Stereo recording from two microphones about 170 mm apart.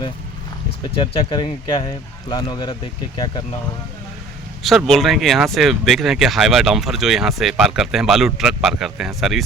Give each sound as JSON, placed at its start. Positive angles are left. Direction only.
{"t": 0.9, "sound": "speech", "side_deg": 30}
{"t": 4.6, "sound": "speech", "side_deg": 0}